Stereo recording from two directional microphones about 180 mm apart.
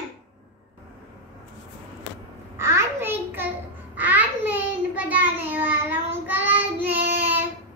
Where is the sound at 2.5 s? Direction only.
15° right (ahead or behind).